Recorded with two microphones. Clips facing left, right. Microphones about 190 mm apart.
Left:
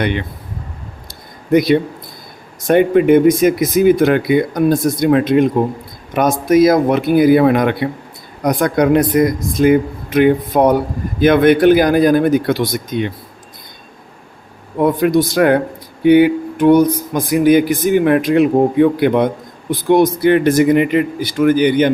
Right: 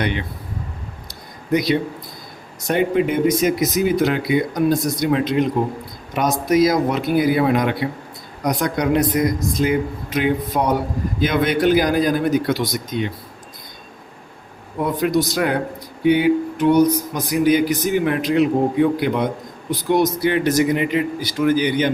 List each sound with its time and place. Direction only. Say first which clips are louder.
0.0 s speech: left 4 dB; 55° left (ahead or behind)
1.5 s speech: left 6 dB; 55° left (ahead or behind)
15.0 s speech: left 5 dB; 55° left (ahead or behind)
16.0 s a sound: left 6 dB; 60° left (ahead or behind)
17.2 s speech: left 6 dB; 55° left (ahead or behind)